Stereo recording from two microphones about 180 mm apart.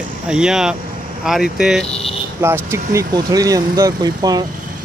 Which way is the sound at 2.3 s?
15° right (ahead or behind).